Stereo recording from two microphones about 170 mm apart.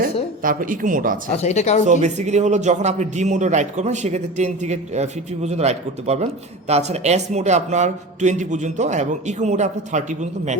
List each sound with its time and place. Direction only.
0.0 s speech: 55° right (ahead or behind)
1.4 s speech: 40° left (ahead or behind)
1.8 s a man's voice: 45° right (ahead or behind)